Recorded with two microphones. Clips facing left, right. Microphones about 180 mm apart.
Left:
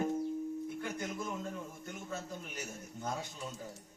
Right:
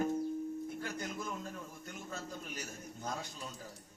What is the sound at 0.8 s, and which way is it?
Speech, 20° left (ahead or behind).